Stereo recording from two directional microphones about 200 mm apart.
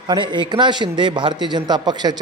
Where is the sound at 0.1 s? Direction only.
20° right (ahead or behind).